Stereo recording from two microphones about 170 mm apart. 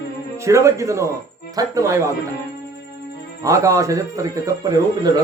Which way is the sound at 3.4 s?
20° right (ahead or behind).